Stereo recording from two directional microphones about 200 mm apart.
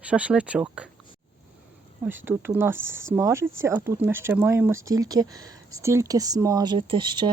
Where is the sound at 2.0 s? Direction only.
10° right (ahead or behind).